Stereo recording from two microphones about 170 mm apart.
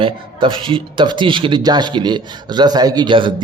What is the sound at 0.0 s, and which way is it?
Speech, 30° right (ahead or behind).